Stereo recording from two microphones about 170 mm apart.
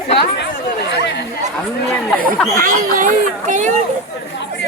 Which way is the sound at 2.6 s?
50° right (ahead or behind).